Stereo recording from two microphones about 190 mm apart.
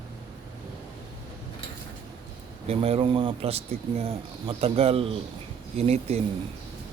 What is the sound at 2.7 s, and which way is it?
Speech, 30° right (ahead or behind).